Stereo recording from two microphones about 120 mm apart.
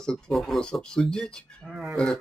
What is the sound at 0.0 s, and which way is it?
Speech, 5° left (ahead or behind).